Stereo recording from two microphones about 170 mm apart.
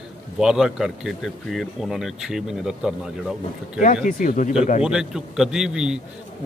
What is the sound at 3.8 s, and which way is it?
Speech, 55° left (ahead or behind).